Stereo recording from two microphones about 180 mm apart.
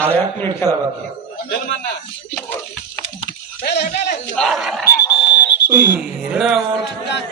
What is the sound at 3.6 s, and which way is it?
Speech, 70° left (ahead or behind).